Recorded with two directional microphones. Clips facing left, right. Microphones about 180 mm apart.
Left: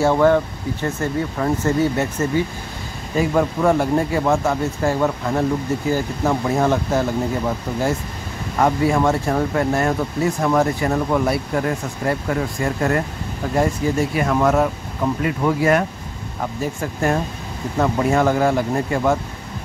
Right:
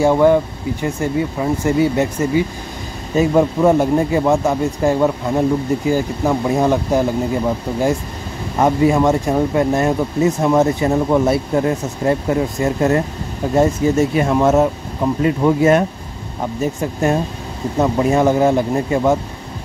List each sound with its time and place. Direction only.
0.0 s speech: 15° right (ahead or behind)